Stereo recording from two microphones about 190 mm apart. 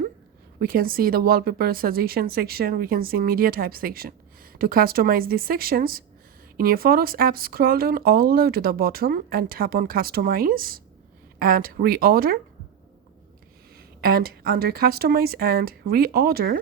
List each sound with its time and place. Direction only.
0.6 s speech: 50° right (ahead or behind)
13.7 s speech: 55° right (ahead or behind)